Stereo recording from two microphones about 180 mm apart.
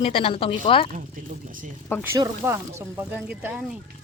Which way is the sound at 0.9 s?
45° right (ahead or behind).